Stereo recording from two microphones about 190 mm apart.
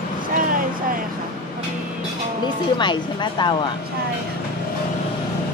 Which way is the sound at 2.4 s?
25° left (ahead or behind).